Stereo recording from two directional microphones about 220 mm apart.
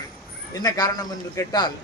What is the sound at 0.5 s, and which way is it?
Speech, 15° left (ahead or behind).